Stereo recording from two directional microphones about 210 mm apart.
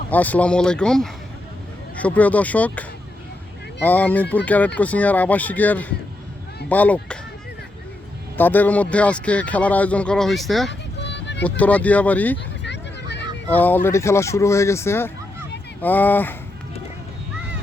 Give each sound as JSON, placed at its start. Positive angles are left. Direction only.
{"t": 0.1, "sound": "speech", "side_deg": 5}
{"t": 8.4, "sound": "speech", "side_deg": 10}
{"t": 10.7, "sound": "music", "side_deg": 55}
{"t": 11.4, "sound": "speech", "side_deg": 5}
{"t": 12.6, "sound": "a sound", "side_deg": 55}
{"t": 13.5, "sound": "speech", "side_deg": 10}